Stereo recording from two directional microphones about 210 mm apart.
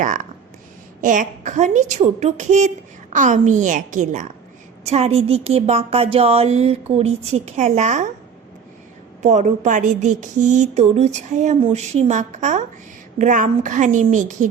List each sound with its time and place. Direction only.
0.0 s speech: 40° right (ahead or behind)
9.2 s speech: 35° right (ahead or behind)